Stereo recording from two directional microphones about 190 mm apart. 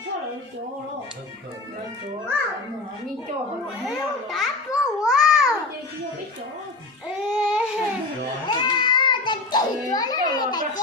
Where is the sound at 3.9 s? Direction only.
Centre (ahead or behind).